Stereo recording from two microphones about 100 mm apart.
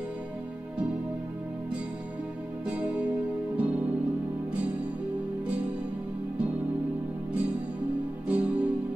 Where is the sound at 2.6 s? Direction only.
15° right (ahead or behind).